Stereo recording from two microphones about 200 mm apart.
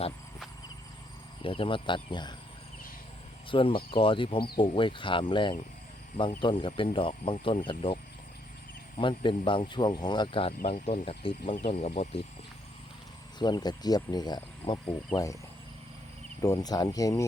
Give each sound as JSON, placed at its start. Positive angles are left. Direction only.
{"t": 1.4, "sound": "speech", "side_deg": 25}
{"t": 3.5, "sound": "speech", "side_deg": 25}
{"t": 9.0, "sound": "speech", "side_deg": 25}
{"t": 10.6, "sound": "speech", "side_deg": 40}
{"t": 11.4, "sound": "speech", "side_deg": 40}
{"t": 13.4, "sound": "speech", "side_deg": 20}
{"t": 16.4, "sound": "speech", "side_deg": 15}